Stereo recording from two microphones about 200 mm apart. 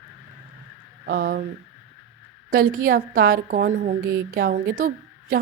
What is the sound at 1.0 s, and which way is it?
Speech, 50° right (ahead or behind).